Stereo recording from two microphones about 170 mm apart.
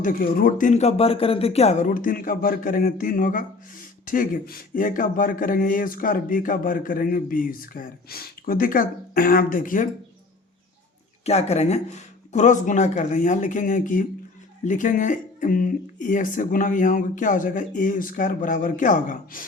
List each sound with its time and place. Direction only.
0.0 s speech: 55° left (ahead or behind)
0.7 s speech: 40° left (ahead or behind)
11.3 s speech: 40° left (ahead or behind)